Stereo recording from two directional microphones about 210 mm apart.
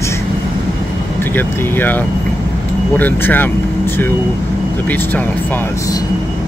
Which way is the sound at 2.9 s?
10° left (ahead or behind).